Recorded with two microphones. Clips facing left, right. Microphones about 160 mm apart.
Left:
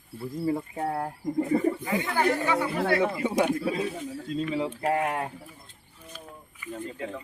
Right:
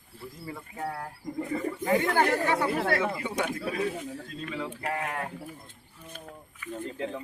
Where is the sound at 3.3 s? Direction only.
30° left (ahead or behind).